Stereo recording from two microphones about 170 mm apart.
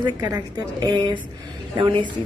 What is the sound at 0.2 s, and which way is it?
Speech, 25° right (ahead or behind).